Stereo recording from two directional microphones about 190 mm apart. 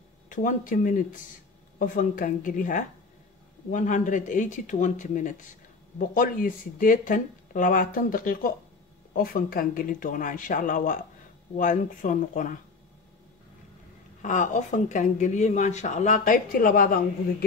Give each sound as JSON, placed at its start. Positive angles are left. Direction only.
{"t": 0.3, "sound": "speech", "side_deg": 45}
{"t": 14.2, "sound": "speech", "side_deg": 40}